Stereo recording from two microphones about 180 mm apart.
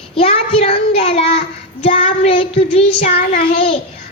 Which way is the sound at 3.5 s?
30° left (ahead or behind).